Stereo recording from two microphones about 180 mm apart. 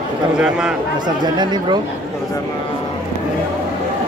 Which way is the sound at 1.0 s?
25° right (ahead or behind).